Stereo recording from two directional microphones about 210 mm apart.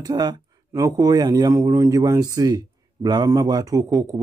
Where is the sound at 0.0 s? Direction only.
20° right (ahead or behind).